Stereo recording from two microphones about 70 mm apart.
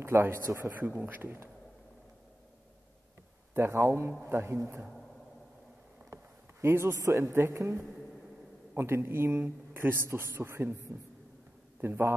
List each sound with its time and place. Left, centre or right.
0.0 s a man's voice: right
0.7 s speech: right
3.5 s a man's voice: right
6.6 s a man's voice: right
11.8 s a man's voice: right